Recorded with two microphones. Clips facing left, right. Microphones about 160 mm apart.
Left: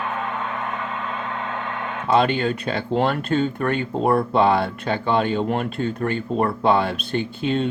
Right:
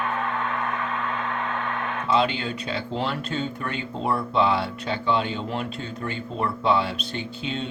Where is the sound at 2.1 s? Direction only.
55° left (ahead or behind).